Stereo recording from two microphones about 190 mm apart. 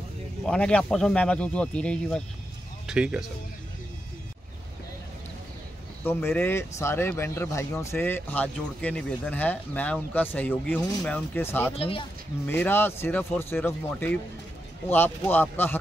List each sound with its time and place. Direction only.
0.5 s speech: 5° left (ahead or behind)
6.0 s speech: 10° left (ahead or behind)
11.7 s speech: 30° left (ahead or behind)
12.4 s speech: 10° left (ahead or behind)